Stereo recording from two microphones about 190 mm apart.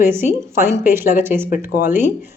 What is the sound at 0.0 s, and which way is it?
Speech, 10° right (ahead or behind).